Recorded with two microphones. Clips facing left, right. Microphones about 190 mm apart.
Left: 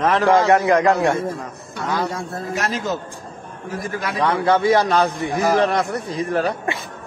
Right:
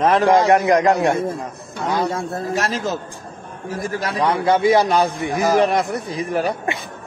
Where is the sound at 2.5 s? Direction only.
35° right (ahead or behind).